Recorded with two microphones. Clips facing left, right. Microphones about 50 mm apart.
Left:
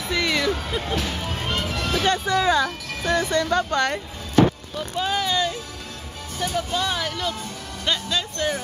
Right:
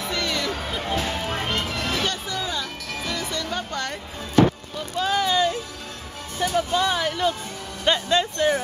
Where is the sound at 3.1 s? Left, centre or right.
Left.